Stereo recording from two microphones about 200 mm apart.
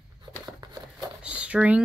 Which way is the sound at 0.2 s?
20° right (ahead or behind).